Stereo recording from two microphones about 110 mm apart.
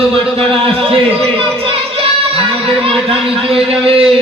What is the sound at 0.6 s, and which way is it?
Speech, 55° right (ahead or behind).